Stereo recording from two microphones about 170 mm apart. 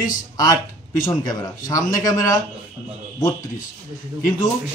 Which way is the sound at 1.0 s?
25° left (ahead or behind).